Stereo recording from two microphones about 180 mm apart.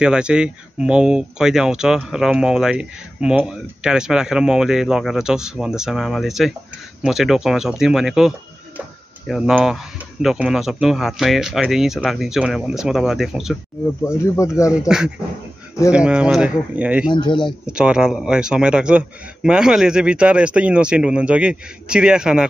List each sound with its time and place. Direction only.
0.0 s speech: 5° right (ahead or behind)
14.0 s speech: 15° left (ahead or behind)
14.8 s speech: 5° right (ahead or behind)
17.1 s speech: 25° left (ahead or behind)
17.6 s speech: 5° right (ahead or behind)